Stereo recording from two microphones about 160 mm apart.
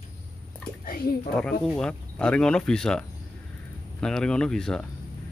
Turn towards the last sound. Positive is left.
turn(degrees=5)  # may be behind; listen again after turning